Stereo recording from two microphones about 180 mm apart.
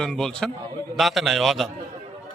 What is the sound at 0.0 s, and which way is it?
Speech, 5° left (ahead or behind).